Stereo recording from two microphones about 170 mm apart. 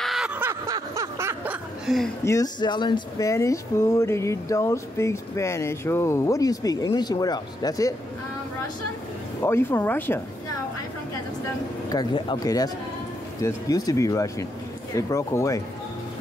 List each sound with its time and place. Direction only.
0.0 s a sound: centre (ahead or behind)
2.2 s speech: 20° left (ahead or behind)
9.4 s speech: 15° left (ahead or behind)
11.9 s speech: 25° left (ahead or behind)